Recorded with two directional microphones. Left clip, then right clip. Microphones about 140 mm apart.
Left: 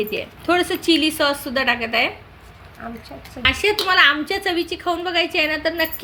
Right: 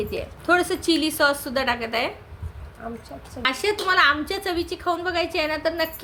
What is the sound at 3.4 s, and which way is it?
A woman's voice, 20° left (ahead or behind).